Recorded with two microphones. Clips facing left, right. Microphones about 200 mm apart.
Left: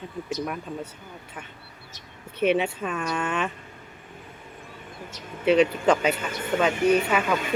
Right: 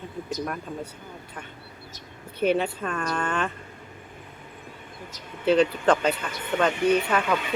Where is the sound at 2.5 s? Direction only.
5° left (ahead or behind).